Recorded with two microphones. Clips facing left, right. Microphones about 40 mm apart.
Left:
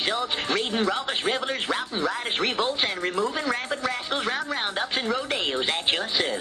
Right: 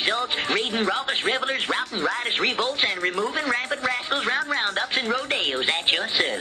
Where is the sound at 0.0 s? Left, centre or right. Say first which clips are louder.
Right 2 dB; right.